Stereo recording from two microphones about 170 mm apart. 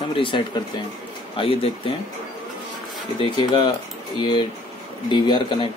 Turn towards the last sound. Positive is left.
turn(degrees=30)  # may be behind; listen again after turning